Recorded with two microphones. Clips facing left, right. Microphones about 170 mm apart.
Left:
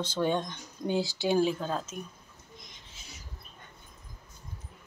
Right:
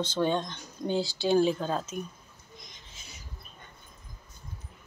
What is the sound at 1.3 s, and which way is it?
Speech, 5° left (ahead or behind).